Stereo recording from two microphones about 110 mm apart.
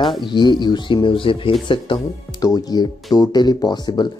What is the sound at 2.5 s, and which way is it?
Speech, 35° left (ahead or behind).